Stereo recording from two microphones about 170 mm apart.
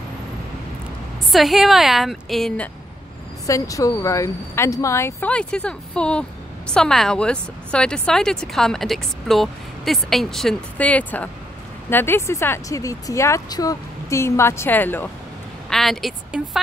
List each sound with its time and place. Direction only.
1.3 s speech: centre (ahead or behind)
3.4 s a woman's voice: 20° left (ahead or behind); by 16.4 s 5° right (ahead or behind)